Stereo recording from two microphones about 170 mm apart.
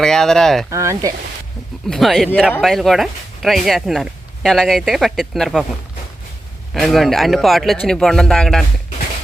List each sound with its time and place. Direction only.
0.0 s speech: 5° left (ahead or behind)
0.7 s speech: 20° right (ahead or behind)
1.9 s speech: centre (ahead or behind)
6.7 s speech: centre (ahead or behind)